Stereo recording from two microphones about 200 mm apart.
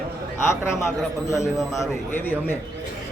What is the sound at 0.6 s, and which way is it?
Speech, 15° left (ahead or behind).